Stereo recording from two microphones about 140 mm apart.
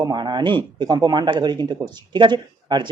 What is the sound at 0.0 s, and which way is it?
Speech, 30° right (ahead or behind).